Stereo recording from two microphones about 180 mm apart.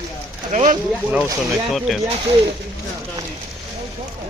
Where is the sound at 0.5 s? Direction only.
45° right (ahead or behind).